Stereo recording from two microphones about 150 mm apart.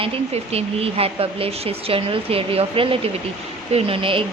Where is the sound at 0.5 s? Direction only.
40° right (ahead or behind).